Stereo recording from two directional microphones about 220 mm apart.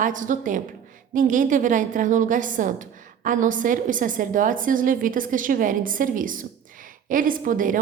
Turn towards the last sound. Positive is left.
turn(degrees=-40)  # may be behind; listen again after turning